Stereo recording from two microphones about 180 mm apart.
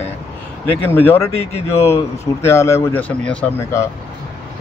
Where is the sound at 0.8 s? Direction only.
10° left (ahead or behind).